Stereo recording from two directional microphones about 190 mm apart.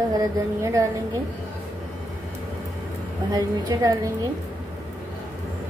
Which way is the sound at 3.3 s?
20° right (ahead or behind).